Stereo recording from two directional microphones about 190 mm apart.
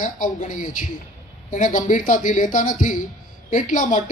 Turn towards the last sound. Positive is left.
turn(degrees=45)  # may be behind; listen again after turning